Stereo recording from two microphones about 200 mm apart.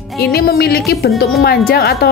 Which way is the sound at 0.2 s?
50° left (ahead or behind).